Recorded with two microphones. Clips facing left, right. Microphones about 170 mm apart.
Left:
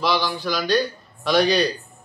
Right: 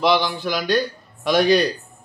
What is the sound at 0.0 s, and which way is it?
Speech, 20° right (ahead or behind).